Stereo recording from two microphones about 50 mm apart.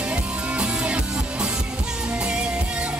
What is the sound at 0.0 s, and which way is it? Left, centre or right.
Music, right.